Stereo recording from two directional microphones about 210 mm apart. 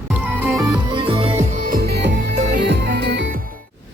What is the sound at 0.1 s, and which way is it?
Music, 10° right (ahead or behind).